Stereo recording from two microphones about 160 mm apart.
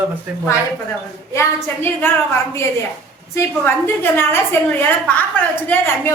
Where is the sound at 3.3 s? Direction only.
15° left (ahead or behind).